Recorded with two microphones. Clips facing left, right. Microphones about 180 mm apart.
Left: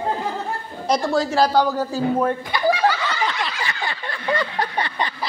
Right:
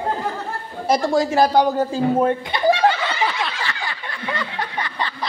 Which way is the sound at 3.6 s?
25° left (ahead or behind).